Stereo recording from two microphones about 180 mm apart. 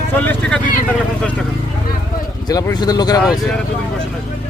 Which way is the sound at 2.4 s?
20° left (ahead or behind).